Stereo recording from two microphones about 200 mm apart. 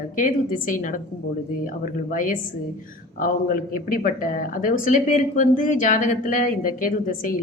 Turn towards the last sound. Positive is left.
turn(degrees=45)  # may be behind; listen again after turning